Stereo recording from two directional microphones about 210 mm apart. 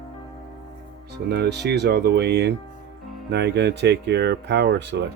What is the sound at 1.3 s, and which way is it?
Speech, 50° right (ahead or behind).